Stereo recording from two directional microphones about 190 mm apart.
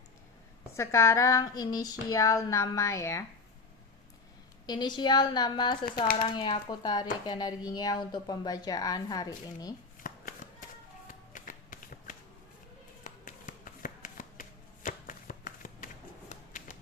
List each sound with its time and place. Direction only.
0.8 s speech: 15° left (ahead or behind)
4.6 s speech: 20° left (ahead or behind)
10.0 s shuffling cards: 45° left (ahead or behind)
13.1 s a sound: 45° left (ahead or behind)
14.8 s shuffling cards: 45° left (ahead or behind)
16.3 s a sound: 40° left (ahead or behind)